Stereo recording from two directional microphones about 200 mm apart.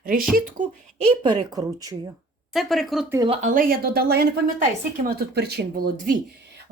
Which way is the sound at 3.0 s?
15° right (ahead or behind).